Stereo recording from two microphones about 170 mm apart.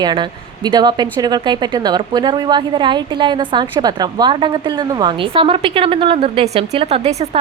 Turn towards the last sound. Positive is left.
turn(degrees=-35)  # may be behind; listen again after turning